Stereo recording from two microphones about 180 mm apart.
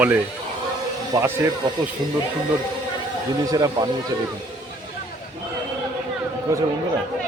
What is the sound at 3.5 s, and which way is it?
Speech, 20° right (ahead or behind).